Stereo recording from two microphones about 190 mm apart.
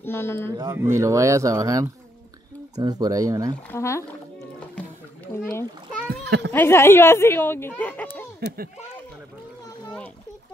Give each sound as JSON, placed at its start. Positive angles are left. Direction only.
{"t": 0.0, "sound": "speech", "side_deg": 15}
{"t": 0.6, "sound": "speech", "side_deg": -15}
{"t": 3.7, "sound": "speech", "side_deg": 15}
{"t": 4.7, "sound": "music", "side_deg": 10}
{"t": 6.2, "sound": "speech", "side_deg": -60}
{"t": 6.5, "sound": "speech", "side_deg": 10}